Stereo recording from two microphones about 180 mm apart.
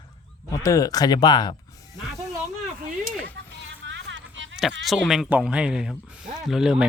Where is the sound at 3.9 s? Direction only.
85° right.